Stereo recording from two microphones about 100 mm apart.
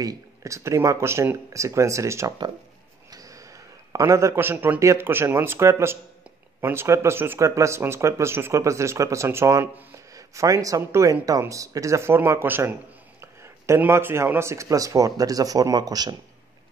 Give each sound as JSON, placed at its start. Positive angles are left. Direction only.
{"t": 0.0, "sound": "a man's voice", "side_deg": -35}
{"t": 13.2, "sound": "a sound", "side_deg": -30}
{"t": 13.7, "sound": "speech", "side_deg": -25}